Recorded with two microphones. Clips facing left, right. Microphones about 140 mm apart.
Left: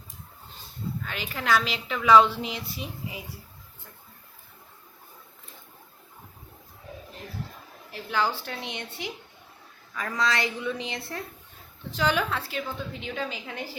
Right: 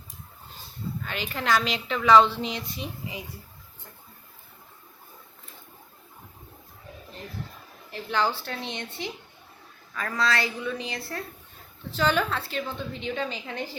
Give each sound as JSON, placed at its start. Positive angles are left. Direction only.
{"t": 1.0, "sound": "a woman's voice", "side_deg": 0}
{"t": 7.9, "sound": "a woman's voice", "side_deg": 5}